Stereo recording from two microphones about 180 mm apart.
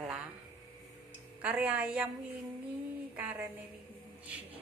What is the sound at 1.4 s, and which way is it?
Speech, 5° right (ahead or behind).